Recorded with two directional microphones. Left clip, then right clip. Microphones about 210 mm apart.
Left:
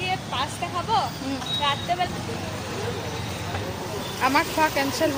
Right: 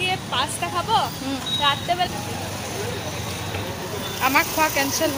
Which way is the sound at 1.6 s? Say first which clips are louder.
Right 3 dB; 40° right (ahead or behind).